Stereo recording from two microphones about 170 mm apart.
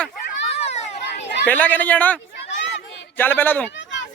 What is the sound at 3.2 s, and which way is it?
Speech, 10° left (ahead or behind).